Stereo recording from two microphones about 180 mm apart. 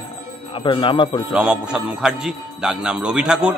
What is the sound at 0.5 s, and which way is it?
Speech, 25° left (ahead or behind).